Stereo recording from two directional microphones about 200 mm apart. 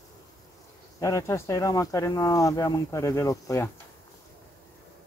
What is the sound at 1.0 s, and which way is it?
Speech, 15° left (ahead or behind).